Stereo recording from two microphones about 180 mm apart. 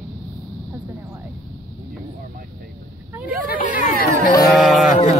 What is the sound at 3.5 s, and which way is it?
Speech, 45° left (ahead or behind).